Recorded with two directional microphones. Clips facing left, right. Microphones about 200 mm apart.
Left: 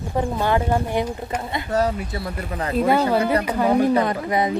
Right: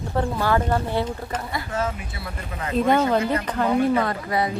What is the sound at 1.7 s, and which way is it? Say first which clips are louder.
Speech: left 8 dB; 40° left (ahead or behind).